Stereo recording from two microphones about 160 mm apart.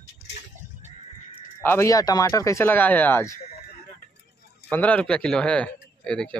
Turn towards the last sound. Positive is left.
turn(degrees=5)  # may be behind; listen again after turning